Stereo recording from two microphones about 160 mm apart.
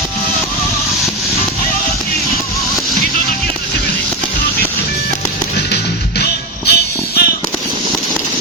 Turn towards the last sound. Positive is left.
turn(degrees=80)